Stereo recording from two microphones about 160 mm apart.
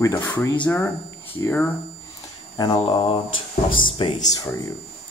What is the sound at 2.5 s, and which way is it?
Speech, 25° left (ahead or behind).